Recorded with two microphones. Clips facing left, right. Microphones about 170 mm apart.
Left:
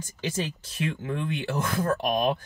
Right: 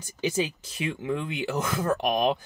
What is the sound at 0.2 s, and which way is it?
Speech, 10° right (ahead or behind).